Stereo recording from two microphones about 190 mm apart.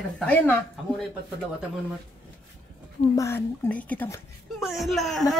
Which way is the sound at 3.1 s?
15° left (ahead or behind).